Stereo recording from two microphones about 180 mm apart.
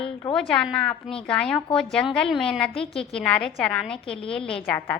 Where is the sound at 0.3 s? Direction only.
5° left (ahead or behind).